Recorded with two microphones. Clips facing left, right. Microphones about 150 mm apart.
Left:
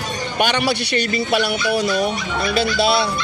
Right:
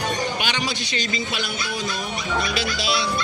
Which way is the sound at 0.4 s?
60° left (ahead or behind).